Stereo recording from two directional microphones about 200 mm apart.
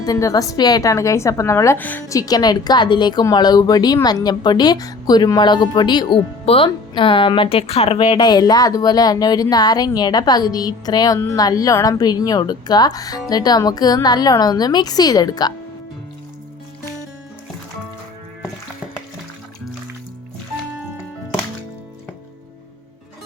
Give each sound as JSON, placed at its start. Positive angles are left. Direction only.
{"t": 0.0, "sound": "a woman's voice", "side_deg": 15}